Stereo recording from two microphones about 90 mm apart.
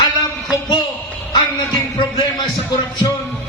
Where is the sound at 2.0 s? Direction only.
55° left (ahead or behind).